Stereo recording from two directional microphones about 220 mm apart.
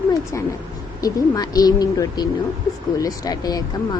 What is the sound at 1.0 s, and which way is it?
Speech, 15° left (ahead or behind).